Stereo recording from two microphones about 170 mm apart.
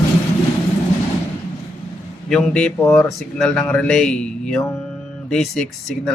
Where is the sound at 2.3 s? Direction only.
5° left (ahead or behind).